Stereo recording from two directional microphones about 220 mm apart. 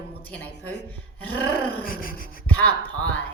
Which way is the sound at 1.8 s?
40° left (ahead or behind).